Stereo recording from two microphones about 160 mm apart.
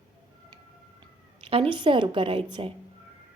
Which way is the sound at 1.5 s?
35° right (ahead or behind).